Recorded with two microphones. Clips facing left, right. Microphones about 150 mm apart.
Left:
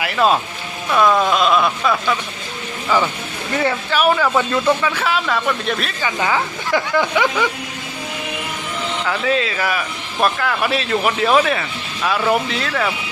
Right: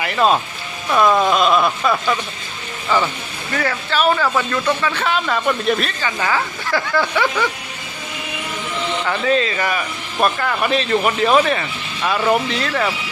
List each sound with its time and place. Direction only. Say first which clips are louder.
0.0 s speech: even; centre (ahead or behind)
2.9 s speech: even; 10° left (ahead or behind)
6.0 s speech: left 1 dB; 15° left (ahead or behind)
9.0 s speech: right 1 dB; centre (ahead or behind)